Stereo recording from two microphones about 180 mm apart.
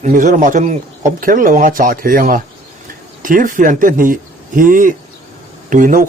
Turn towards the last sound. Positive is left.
turn(degrees=-45)  # may be behind; listen again after turning